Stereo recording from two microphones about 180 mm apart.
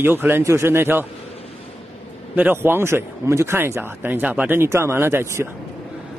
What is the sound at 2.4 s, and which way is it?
Speech, 10° right (ahead or behind).